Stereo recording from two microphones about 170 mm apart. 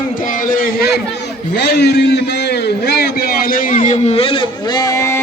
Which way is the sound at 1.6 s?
75° left (ahead or behind).